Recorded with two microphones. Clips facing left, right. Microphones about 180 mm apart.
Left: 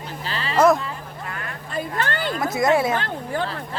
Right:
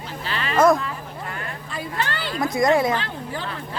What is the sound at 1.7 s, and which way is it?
Speech, 50° left (ahead or behind).